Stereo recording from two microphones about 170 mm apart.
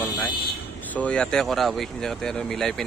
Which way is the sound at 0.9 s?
5° left (ahead or behind).